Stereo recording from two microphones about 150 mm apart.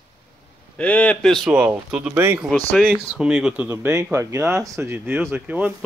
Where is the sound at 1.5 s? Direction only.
10° right (ahead or behind).